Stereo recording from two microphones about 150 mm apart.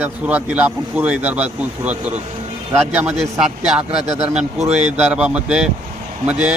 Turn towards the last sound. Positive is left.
turn(degrees=-5)  # may be behind; listen again after turning